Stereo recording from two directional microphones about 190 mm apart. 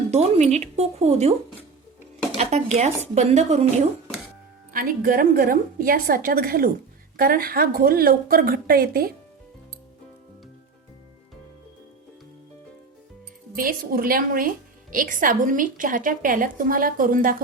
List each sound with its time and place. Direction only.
0.1 s speech: 35° right (ahead or behind)
2.4 s speech: 35° right (ahead or behind)
4.7 s a woman's voice: 45° right (ahead or behind)
13.6 s a woman's voice: 50° right (ahead or behind)